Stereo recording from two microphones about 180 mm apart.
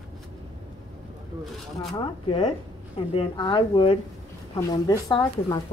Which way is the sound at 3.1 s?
30° left (ahead or behind).